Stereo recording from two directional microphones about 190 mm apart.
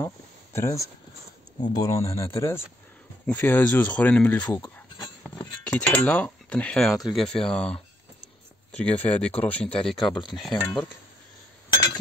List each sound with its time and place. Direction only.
0.0 s a sound: 15° left (ahead or behind)
1.6 s speech: 20° left (ahead or behind)
9.9 s speech: 25° left (ahead or behind)
10.3 s speech: centre (ahead or behind)